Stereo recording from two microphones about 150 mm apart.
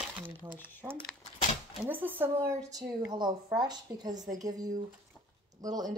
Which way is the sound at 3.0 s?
30° right (ahead or behind).